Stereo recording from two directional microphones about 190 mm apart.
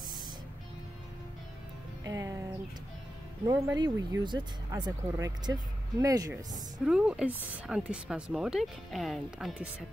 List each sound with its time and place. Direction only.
2.0 s music: 20° right (ahead or behind)
3.4 s speech: 20° right (ahead or behind)
6.8 s a woman's voice: 5° right (ahead or behind)